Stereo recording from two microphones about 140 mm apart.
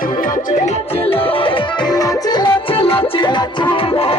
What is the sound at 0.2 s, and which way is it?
Music, 70° left (ahead or behind).